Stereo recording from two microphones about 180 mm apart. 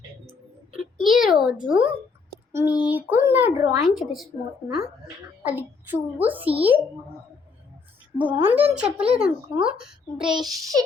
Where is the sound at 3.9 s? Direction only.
Centre (ahead or behind).